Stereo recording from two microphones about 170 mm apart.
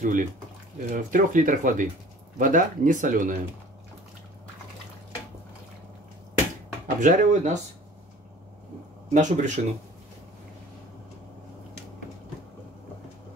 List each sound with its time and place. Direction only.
0.0 s speech: 50° right (ahead or behind)
7.0 s speech: 50° right (ahead or behind)
9.1 s speech: 45° right (ahead or behind)